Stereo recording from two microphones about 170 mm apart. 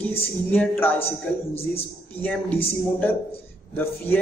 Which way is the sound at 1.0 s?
35° left (ahead or behind).